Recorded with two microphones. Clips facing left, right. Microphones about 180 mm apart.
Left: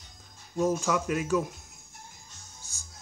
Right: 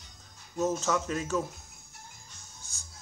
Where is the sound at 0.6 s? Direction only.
10° left (ahead or behind).